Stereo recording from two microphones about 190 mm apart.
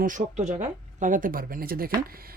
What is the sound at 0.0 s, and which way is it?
Speech, 40° right (ahead or behind).